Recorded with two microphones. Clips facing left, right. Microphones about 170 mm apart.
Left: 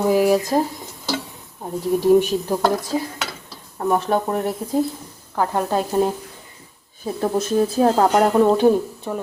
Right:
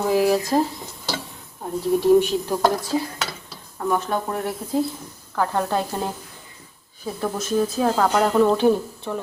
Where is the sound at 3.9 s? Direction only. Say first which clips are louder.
Left 4 dB; 30° left (ahead or behind).